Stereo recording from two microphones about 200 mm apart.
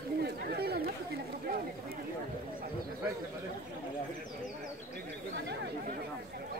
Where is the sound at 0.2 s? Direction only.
50° right (ahead or behind).